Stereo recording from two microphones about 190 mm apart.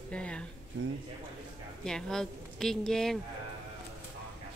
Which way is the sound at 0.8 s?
90° right.